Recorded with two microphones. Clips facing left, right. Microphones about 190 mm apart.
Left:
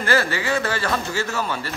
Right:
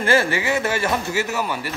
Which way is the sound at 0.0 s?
25° right (ahead or behind).